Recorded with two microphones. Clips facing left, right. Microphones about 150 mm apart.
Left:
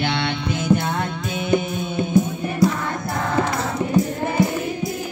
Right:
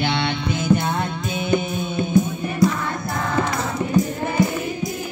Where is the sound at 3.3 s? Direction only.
30° left (ahead or behind).